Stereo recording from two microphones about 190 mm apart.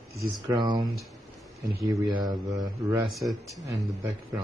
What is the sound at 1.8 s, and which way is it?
Speech, 20° right (ahead or behind).